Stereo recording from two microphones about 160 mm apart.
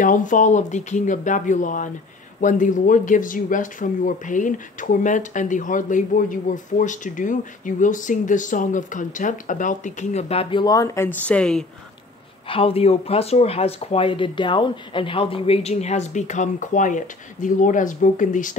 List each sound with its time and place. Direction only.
0.0 s speech: 55° left (ahead or behind); by 11.6 s 5° left (ahead or behind)
12.4 s speech: 35° left (ahead or behind); by 18.6 s 55° left (ahead or behind)